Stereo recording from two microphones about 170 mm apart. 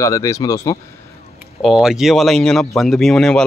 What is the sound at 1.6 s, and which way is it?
Speech, centre (ahead or behind).